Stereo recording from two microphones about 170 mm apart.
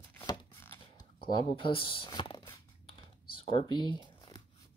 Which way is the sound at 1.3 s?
30° left (ahead or behind).